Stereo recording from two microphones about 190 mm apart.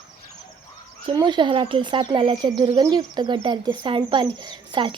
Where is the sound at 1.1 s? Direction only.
25° right (ahead or behind).